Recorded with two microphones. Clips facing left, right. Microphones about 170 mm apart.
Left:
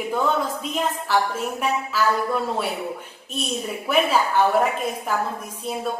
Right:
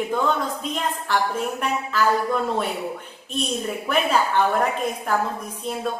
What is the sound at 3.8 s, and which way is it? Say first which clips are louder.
A woman's voice: left 2 dB; 5° left (ahead or behind).